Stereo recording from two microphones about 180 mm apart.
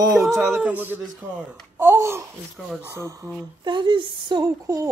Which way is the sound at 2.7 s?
10° right (ahead or behind).